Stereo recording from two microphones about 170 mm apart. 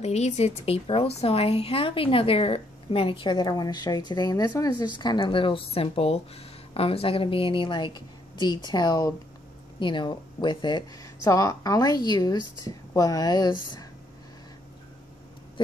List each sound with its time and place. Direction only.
0.0 s a woman's voice: 40° left (ahead or behind); by 13.8 s 25° left (ahead or behind)